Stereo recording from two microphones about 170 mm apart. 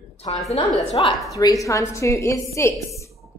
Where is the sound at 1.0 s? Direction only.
30° left (ahead or behind).